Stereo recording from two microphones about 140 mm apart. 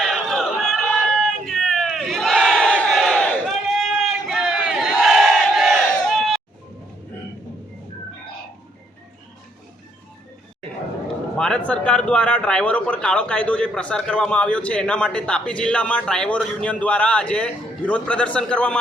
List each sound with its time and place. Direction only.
0.0 s crowd: centre (ahead or behind)
6.1 s a sound: centre (ahead or behind)
11.3 s a man's voice: 5° left (ahead or behind)